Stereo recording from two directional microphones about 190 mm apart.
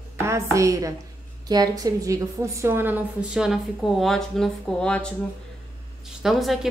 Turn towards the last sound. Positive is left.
turn(degrees=0)  # may be behind; listen again after turning